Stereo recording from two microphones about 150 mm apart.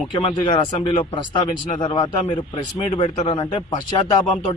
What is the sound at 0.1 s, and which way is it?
A man's voice, 35° left (ahead or behind).